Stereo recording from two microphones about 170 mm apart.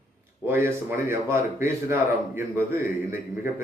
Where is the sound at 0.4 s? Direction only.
15° right (ahead or behind).